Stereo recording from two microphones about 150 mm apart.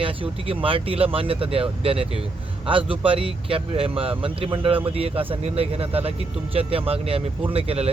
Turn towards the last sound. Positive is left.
turn(degrees=-40)  # may be behind; listen again after turning